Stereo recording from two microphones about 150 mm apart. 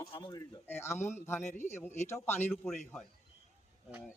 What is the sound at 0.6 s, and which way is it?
Speech, 15° left (ahead or behind).